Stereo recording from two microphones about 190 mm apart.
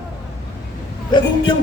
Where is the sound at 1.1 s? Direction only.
25° left (ahead or behind).